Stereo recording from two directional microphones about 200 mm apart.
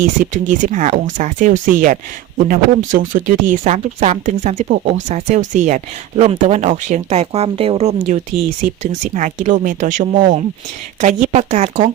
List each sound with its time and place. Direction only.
0.0 s speech: 40° right (ahead or behind)